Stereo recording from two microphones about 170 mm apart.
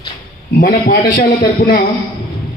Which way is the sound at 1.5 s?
60° left (ahead or behind).